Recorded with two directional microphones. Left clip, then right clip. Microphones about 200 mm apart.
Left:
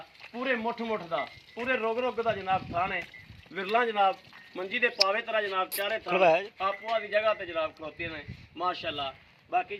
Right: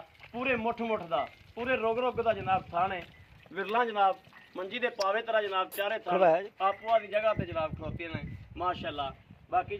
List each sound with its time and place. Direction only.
0.3 s a man's voice: 20° left (ahead or behind); by 6.1 s 50° left (ahead or behind)
6.1 s speech: centre (ahead or behind)
6.6 s speech: 45° left (ahead or behind)